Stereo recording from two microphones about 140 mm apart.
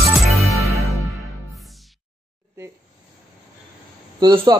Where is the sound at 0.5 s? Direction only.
20° right (ahead or behind).